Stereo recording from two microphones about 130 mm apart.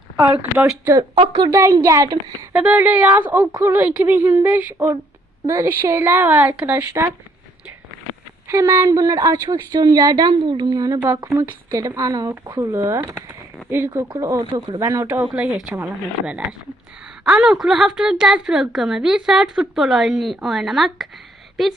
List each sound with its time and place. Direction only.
0.2 s a woman's voice: 10° right (ahead or behind)
2.5 s a woman's voice: 10° right (ahead or behind)
8.4 s a woman's voice: 20° right (ahead or behind); by 21.7 s centre (ahead or behind)